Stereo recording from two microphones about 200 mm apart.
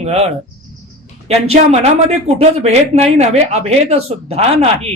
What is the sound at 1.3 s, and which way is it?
Speech, 30° right (ahead or behind).